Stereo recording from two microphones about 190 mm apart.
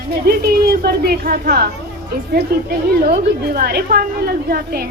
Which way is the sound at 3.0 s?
40° right (ahead or behind).